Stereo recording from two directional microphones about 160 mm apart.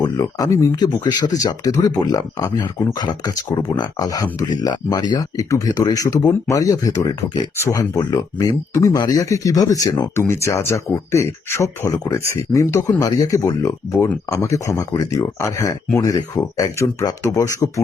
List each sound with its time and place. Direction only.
0.0 s speech: 20° left (ahead or behind)